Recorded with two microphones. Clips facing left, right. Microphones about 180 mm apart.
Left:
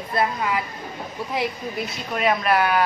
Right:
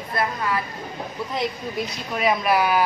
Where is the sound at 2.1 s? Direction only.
Centre (ahead or behind).